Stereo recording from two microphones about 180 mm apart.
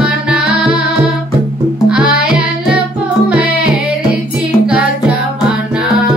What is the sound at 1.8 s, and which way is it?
Music, 5° right (ahead or behind).